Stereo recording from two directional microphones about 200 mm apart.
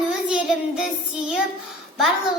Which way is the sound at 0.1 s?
5° right (ahead or behind).